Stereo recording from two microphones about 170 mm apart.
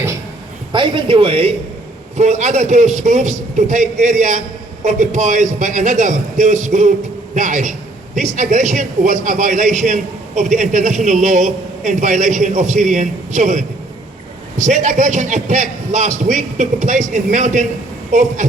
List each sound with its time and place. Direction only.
0.7 s a man's voice: 30° right (ahead or behind); by 18.4 s 45° right (ahead or behind)